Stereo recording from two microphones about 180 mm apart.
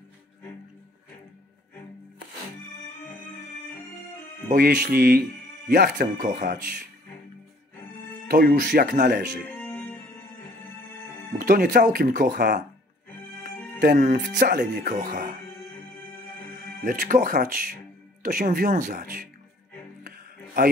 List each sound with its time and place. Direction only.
4.6 s speech: 60° right (ahead or behind)
8.3 s speech: 55° right (ahead or behind)
9.6 s music: 10° left (ahead or behind)
11.3 s speech: 55° right (ahead or behind)
13.7 s speech: 60° right (ahead or behind)
16.8 s speech: 50° right (ahead or behind)